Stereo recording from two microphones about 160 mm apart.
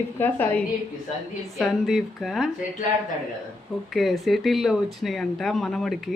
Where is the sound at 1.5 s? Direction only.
Centre (ahead or behind).